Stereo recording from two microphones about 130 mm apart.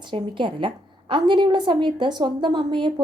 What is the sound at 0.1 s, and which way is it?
A woman's voice, 40° right (ahead or behind).